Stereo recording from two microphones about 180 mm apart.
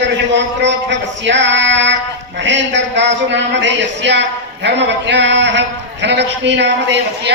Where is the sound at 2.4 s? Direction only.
85° right.